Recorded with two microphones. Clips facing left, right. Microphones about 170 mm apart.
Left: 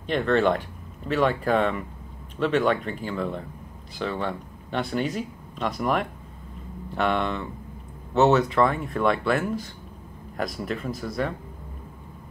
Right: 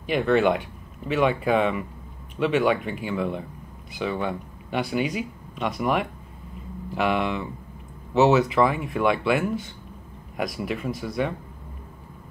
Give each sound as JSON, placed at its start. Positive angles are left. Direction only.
{"t": 0.0, "sound": "speech", "side_deg": -5}